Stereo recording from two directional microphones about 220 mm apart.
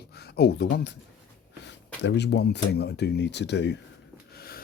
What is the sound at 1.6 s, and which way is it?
Speech, 50° left (ahead or behind).